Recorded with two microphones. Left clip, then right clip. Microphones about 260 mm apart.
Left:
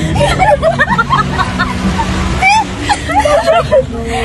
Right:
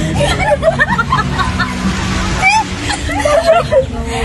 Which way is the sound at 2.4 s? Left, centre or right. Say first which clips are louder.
Left 3 dB; centre.